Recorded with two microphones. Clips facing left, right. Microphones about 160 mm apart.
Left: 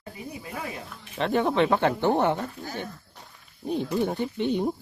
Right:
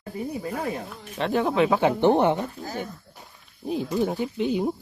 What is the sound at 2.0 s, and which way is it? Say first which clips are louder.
Speech: right 4 dB; 20° right (ahead or behind).